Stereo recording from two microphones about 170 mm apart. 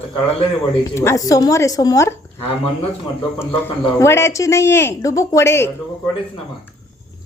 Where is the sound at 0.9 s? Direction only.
20° left (ahead or behind).